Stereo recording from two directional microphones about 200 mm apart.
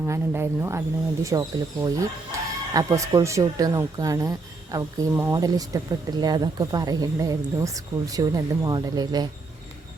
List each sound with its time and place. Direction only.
0.0 s speech: 10° right (ahead or behind)